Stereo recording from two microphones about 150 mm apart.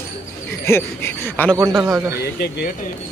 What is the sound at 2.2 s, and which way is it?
Speech, 90° left.